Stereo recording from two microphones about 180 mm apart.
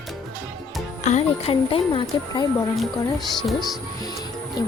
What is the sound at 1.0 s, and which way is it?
Music, 40° left (ahead or behind).